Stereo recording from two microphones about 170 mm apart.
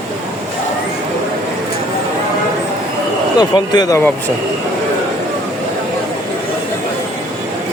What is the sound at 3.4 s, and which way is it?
Speech, 25° left (ahead or behind).